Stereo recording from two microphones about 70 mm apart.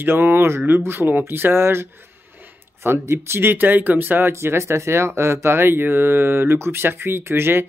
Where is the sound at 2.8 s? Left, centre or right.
Right.